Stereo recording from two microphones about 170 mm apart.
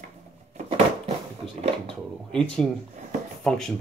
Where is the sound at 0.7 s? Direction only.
30° right (ahead or behind).